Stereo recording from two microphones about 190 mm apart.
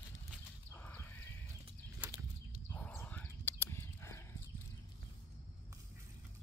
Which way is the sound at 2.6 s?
10° left (ahead or behind).